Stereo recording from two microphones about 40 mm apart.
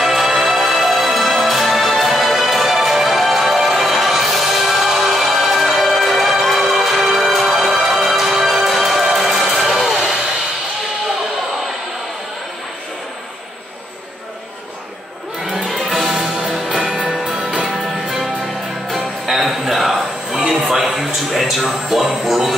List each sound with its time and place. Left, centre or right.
0.0 s music: centre
15.5 s music: centre
17.6 s music: centre
19.2 s a sound: centre